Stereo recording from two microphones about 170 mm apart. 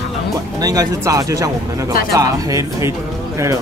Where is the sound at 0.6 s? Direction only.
20° right (ahead or behind).